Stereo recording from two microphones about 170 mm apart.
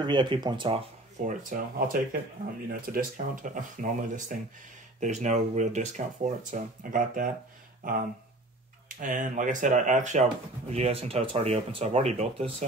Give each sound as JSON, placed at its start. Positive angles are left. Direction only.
{"t": 0.0, "sound": "speech", "side_deg": -25}
{"t": 1.2, "sound": "speech", "side_deg": -55}
{"t": 8.8, "sound": "speech", "side_deg": -50}